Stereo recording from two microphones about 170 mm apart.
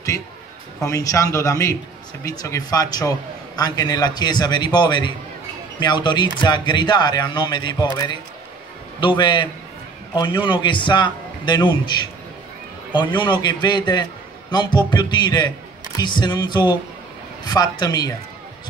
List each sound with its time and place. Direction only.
0.8 s a man's voice: 20° left (ahead or behind)